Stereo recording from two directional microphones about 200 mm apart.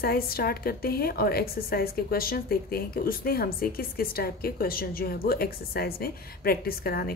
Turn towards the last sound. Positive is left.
turn(degrees=50)  # may be behind; listen again after turning